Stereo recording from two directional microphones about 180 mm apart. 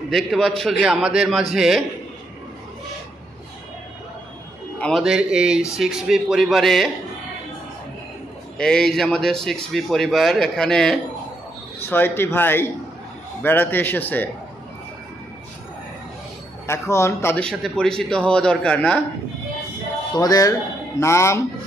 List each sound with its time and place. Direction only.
0.1 s speech: centre (ahead or behind)
4.7 s a man's voice: 5° left (ahead or behind)
5.0 s speech: 5° right (ahead or behind)
8.5 s a man's voice: 5° left (ahead or behind)
16.6 s speech: 15° left (ahead or behind)
20.2 s a man's voice: 20° left (ahead or behind)